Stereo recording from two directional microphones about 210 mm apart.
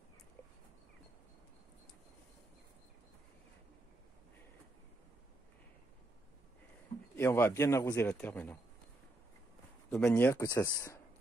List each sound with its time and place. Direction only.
7.2 s a man's voice: 10° left (ahead or behind)
9.8 s a man's voice: 10° left (ahead or behind)